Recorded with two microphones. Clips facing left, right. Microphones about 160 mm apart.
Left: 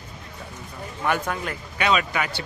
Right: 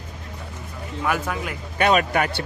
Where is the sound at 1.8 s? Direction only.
50° right (ahead or behind).